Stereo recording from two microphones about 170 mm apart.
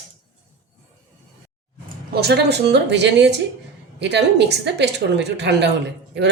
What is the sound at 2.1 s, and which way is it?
A woman's voice, 70° right (ahead or behind).